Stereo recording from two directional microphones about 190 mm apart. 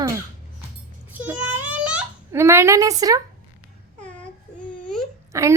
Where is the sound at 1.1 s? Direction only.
10° right (ahead or behind).